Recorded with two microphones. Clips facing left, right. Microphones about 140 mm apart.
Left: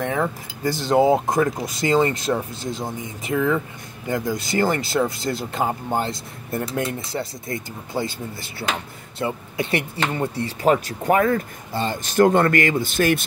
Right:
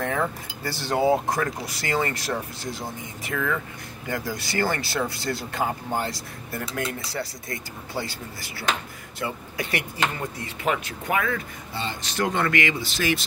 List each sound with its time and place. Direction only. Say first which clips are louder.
0.0 s speech: left 3 dB; 20° left (ahead or behind); by 13.2 s 50° left (ahead or behind)